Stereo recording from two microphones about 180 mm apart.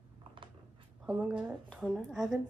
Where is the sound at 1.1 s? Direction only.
5° right (ahead or behind).